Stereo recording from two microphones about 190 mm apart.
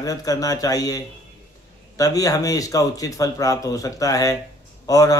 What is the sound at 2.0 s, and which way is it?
Speech, 20° left (ahead or behind).